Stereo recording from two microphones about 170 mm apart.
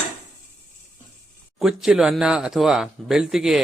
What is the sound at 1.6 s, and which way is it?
A man's voice, centre (ahead or behind).